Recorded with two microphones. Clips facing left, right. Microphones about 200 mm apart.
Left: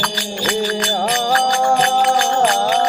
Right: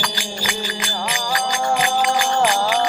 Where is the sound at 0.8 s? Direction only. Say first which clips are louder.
Left 7 dB; 40° left (ahead or behind).